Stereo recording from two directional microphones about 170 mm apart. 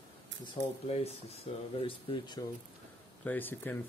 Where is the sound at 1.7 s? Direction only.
30° left (ahead or behind).